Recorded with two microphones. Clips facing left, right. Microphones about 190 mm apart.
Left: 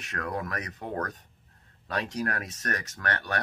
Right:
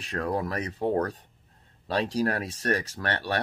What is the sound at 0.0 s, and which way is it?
Speech, 30° right (ahead or behind).